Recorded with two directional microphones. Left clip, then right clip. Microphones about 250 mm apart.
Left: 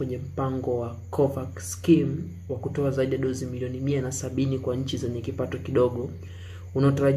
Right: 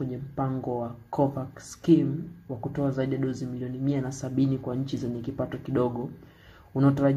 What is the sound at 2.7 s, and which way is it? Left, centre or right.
Speech, centre.